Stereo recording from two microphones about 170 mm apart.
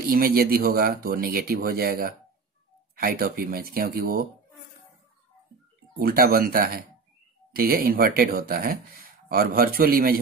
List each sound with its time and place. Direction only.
0.0 s speech: 60° right (ahead or behind)
5.9 s speech: 60° right (ahead or behind)